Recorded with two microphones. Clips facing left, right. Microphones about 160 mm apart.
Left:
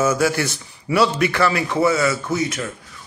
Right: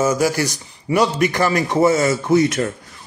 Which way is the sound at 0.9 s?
40° right (ahead or behind).